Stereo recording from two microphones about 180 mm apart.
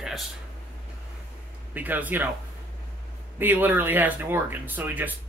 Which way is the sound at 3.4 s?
10° right (ahead or behind).